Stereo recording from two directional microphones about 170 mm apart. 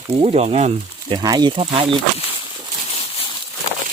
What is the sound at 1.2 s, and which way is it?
Speech, 25° right (ahead or behind).